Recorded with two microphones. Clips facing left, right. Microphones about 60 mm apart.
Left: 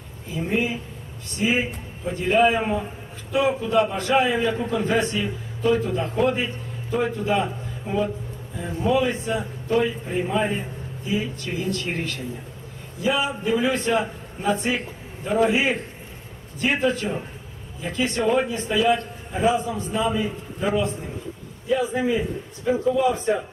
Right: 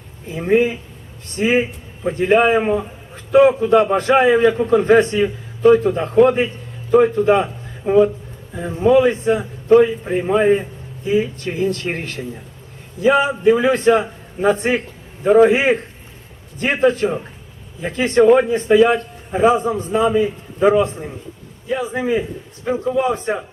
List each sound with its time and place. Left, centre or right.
0.3 s a man's voice: right